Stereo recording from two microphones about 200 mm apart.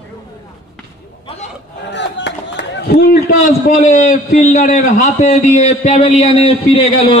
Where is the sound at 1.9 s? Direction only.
60° left (ahead or behind).